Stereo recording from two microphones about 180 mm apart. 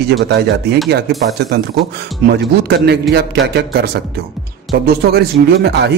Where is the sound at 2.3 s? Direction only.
65° right (ahead or behind).